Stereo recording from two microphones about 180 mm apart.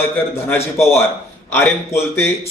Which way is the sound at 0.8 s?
15° left (ahead or behind).